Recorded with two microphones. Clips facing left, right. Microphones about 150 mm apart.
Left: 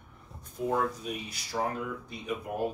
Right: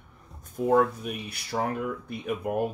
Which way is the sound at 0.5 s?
55° right (ahead or behind).